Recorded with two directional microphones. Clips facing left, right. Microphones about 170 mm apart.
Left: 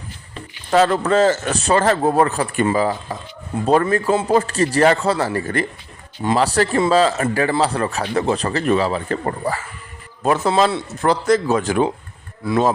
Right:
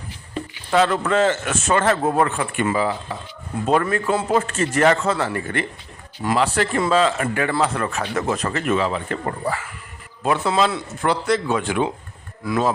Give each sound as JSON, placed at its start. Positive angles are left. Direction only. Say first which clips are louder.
{"t": 0.7, "sound": "a man's voice", "louder": "left 3 dB", "side_deg": 40}